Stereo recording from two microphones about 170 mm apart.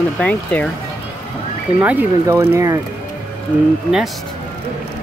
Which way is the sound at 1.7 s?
10° right (ahead or behind).